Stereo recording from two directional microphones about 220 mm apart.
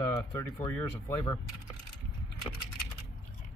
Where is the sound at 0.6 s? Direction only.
15° left (ahead or behind).